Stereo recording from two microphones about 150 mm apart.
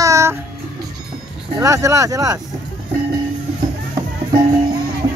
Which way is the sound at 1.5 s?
20° right (ahead or behind).